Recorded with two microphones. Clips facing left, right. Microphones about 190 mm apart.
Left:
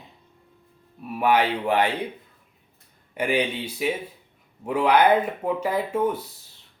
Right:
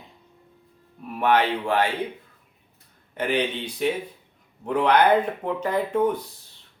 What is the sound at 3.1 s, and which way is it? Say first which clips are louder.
Speech: left 1 dB; 10° left (ahead or behind).